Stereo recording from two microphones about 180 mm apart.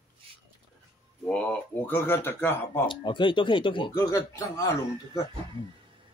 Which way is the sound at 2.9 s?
25° left (ahead or behind).